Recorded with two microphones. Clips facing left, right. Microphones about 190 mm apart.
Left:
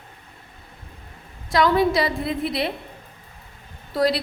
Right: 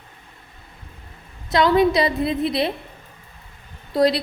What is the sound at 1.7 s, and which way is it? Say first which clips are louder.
A woman's voice: right 3 dB; 20° right (ahead or behind).